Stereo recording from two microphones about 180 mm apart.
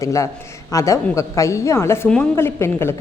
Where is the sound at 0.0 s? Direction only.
15° left (ahead or behind).